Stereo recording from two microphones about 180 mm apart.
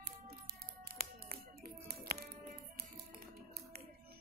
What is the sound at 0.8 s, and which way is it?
Music, 55° right (ahead or behind).